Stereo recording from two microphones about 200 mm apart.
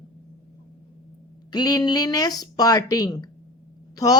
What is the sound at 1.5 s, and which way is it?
A woman's voice, 20° left (ahead or behind).